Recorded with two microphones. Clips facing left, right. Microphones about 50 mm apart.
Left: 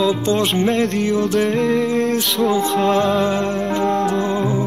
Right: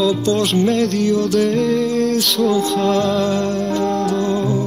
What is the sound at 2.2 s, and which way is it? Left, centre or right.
Music, centre.